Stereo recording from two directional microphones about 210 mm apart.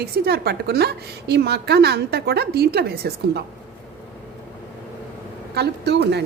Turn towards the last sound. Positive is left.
turn(degrees=-50)  # may be behind; listen again after turning